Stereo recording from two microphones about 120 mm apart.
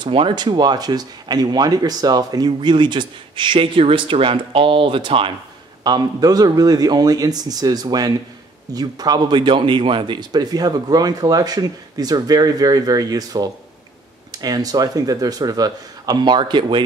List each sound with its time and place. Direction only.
0.0 s speech: 45° right (ahead or behind)
5.9 s speech: 35° right (ahead or behind)